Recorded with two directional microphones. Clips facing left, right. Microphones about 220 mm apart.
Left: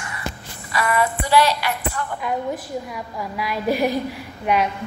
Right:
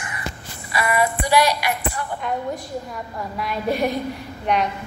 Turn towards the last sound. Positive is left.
turn(degrees=5)  # may be behind; listen again after turning